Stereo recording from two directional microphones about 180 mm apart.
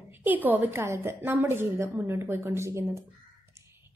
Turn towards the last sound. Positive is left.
turn(degrees=-15)  # may be behind; listen again after turning